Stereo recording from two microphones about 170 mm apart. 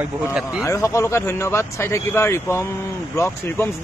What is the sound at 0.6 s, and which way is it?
A man's voice, 20° left (ahead or behind).